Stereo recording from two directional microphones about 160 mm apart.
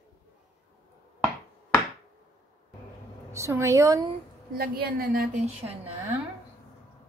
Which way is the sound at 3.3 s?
15° right (ahead or behind).